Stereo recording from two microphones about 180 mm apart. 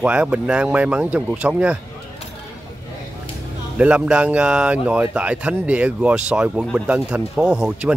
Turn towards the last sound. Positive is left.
turn(degrees=-5)  # may be behind; listen again after turning